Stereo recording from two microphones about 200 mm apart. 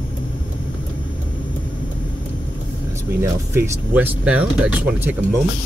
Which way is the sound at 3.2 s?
15° right (ahead or behind).